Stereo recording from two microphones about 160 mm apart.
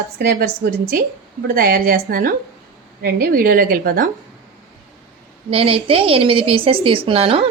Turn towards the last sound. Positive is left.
turn(degrees=-35)  # may be behind; listen again after turning